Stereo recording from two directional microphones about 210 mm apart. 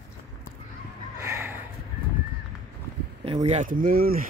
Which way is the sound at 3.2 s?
30° right (ahead or behind).